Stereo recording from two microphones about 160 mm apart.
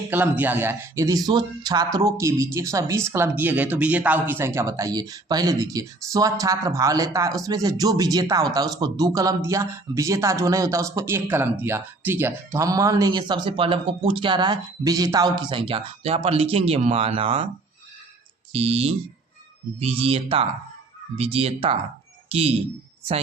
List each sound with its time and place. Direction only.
0.1 s speech: 10° right (ahead or behind); by 17.4 s 35° right (ahead or behind)
18.5 s speech: 40° right (ahead or behind)